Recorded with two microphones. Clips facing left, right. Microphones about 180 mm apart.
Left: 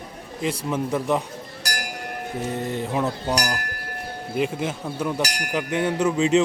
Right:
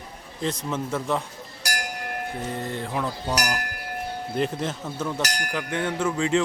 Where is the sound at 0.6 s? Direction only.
15° left (ahead or behind).